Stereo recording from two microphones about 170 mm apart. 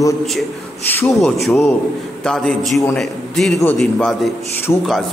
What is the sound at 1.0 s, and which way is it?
A man's voice, centre (ahead or behind).